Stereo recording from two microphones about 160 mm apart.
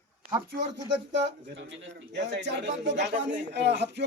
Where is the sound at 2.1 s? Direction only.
90° right.